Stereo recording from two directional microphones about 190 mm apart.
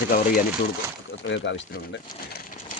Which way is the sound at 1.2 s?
75° left (ahead or behind).